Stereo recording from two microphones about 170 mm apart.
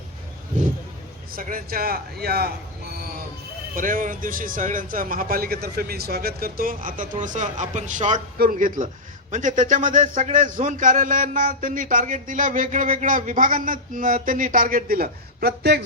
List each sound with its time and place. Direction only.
1.3 s speech: 55° right (ahead or behind)
2.9 s a sound: 60° right (ahead or behind)
3.8 s a man's voice: 55° right (ahead or behind); by 15.8 s 70° right (ahead or behind)